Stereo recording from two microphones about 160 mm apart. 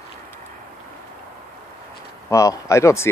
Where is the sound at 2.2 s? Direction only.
20° left (ahead or behind).